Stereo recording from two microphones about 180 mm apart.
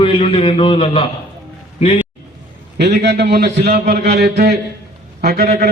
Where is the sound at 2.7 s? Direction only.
70° right (ahead or behind).